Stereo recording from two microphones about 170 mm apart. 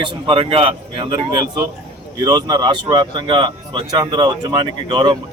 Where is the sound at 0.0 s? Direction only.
30° right (ahead or behind).